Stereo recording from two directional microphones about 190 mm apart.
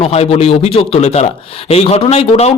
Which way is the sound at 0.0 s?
30° left (ahead or behind).